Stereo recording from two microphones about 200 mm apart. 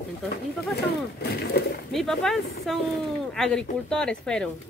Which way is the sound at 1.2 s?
55° left (ahead or behind).